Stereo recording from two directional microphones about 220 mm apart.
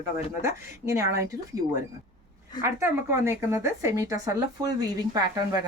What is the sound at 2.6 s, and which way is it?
A woman's voice, 10° right (ahead or behind).